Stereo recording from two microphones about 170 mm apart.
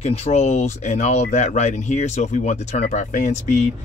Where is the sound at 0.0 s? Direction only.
40° left (ahead or behind).